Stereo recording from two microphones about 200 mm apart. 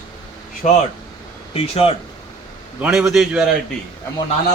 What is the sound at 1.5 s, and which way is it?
Speech, 30° left (ahead or behind).